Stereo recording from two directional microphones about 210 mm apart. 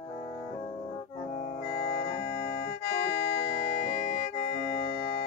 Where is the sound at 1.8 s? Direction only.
40° left (ahead or behind).